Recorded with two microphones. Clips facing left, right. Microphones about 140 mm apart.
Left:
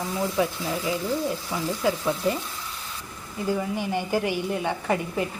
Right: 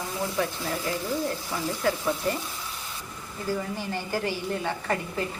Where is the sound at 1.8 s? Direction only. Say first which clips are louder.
Left 2 dB; 10° left (ahead or behind).